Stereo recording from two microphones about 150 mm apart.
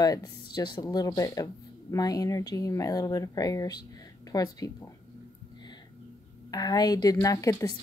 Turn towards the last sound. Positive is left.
turn(degrees=25)  # may be behind; listen again after turning